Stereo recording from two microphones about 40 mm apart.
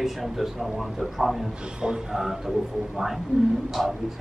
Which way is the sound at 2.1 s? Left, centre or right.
Centre.